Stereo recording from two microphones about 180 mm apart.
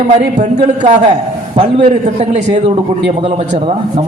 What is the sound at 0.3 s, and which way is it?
A man's voice, 40° right (ahead or behind).